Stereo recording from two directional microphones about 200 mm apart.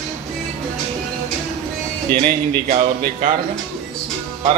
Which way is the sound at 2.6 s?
40° right (ahead or behind).